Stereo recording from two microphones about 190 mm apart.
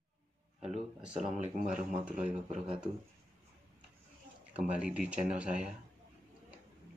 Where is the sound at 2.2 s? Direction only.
35° right (ahead or behind).